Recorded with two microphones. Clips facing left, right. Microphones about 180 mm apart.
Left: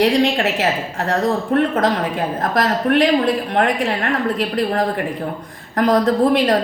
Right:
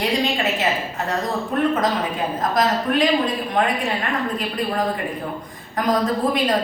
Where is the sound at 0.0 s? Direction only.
75° left (ahead or behind).